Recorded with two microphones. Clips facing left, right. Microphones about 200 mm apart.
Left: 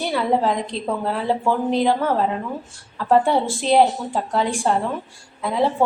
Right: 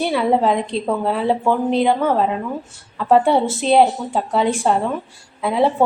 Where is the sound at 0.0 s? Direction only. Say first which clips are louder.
Right 3 dB; 25° right (ahead or behind).